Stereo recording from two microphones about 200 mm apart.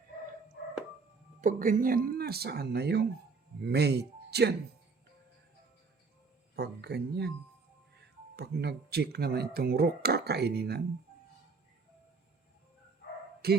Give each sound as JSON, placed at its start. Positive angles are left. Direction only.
{"t": 1.4, "sound": "speech", "side_deg": -40}
{"t": 6.6, "sound": "speech", "side_deg": -55}
{"t": 8.4, "sound": "speech", "side_deg": -55}
{"t": 13.4, "sound": "speech", "side_deg": -50}